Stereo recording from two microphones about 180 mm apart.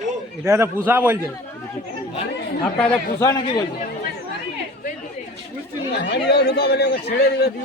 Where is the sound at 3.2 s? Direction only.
20° left (ahead or behind).